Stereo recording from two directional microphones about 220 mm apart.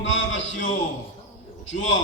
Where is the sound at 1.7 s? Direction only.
55° left (ahead or behind).